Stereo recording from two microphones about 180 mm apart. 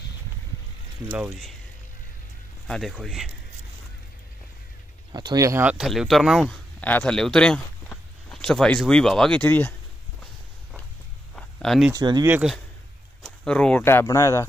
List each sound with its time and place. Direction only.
2.7 s a man's voice: centre (ahead or behind)
5.1 s speech: 20° right (ahead or behind); by 9.8 s 10° left (ahead or behind)
11.3 s a sound: centre (ahead or behind)
11.9 s speech: 20° right (ahead or behind)
12.3 s speech: 10° right (ahead or behind)
13.2 s speech: 5° left (ahead or behind)